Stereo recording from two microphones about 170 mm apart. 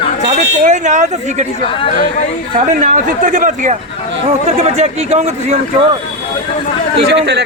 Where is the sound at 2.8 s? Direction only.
45° right (ahead or behind).